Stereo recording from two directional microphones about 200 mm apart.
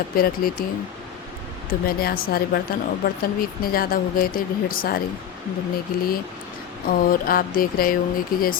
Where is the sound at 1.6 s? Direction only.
50° left (ahead or behind).